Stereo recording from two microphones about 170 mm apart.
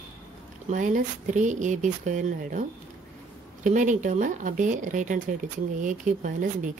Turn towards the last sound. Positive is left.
turn(degrees=-45)  # may be behind; listen again after turning